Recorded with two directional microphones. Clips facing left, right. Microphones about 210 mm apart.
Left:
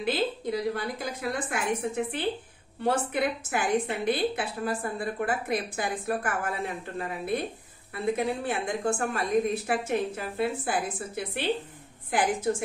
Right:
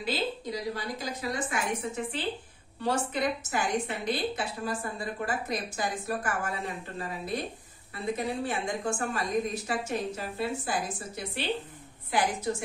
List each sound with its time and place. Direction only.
0.0 s a woman's voice: 55° left (ahead or behind)